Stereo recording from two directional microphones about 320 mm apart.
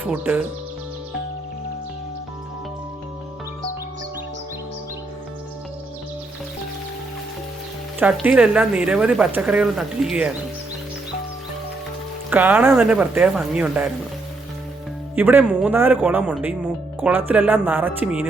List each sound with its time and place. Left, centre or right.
0.0 s speech: centre
7.9 s speech: centre
12.3 s speech: centre
15.1 s speech: centre